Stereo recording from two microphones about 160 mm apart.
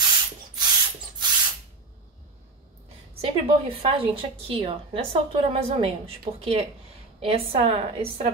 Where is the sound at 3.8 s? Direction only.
35° right (ahead or behind).